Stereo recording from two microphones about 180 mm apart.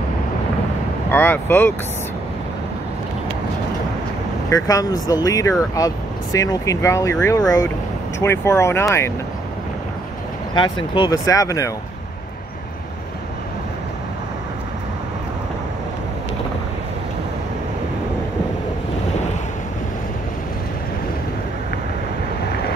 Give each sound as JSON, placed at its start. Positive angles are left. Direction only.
{"t": 1.1, "sound": "speech", "side_deg": 10}
{"t": 4.5, "sound": "speech", "side_deg": 20}
{"t": 10.5, "sound": "speech", "side_deg": 25}